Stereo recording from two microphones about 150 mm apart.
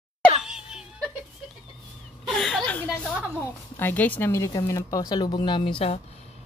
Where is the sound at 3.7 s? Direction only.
10° left (ahead or behind); by 5.9 s 35° left (ahead or behind).